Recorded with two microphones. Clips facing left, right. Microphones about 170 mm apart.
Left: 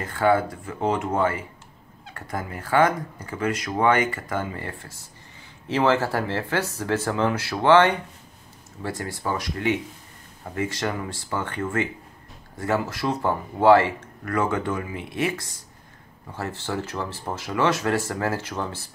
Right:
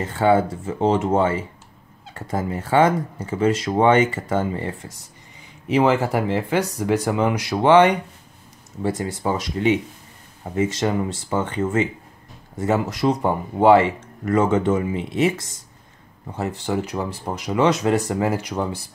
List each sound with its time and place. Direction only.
0.0 s speech: 25° right (ahead or behind)